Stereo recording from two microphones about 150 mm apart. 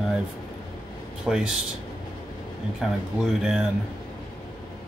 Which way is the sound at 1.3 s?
5° right (ahead or behind).